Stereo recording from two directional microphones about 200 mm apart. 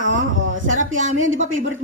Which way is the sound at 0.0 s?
70° right (ahead or behind).